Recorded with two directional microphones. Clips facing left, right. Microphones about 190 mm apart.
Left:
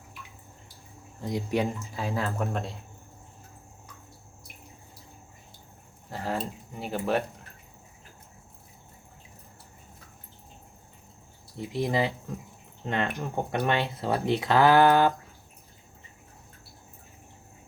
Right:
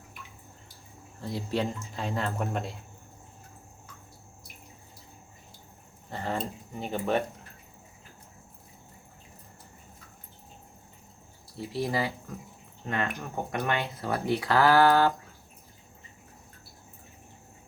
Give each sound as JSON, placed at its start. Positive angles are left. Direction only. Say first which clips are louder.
{"t": 1.2, "sound": "speech", "louder": "left 3 dB", "side_deg": 15}
{"t": 2.0, "sound": "speech", "louder": "left 1 dB", "side_deg": 5}
{"t": 6.1, "sound": "speech", "louder": "left 1 dB", "side_deg": 5}
{"t": 11.5, "sound": "speech", "louder": "left 2 dB", "side_deg": 20}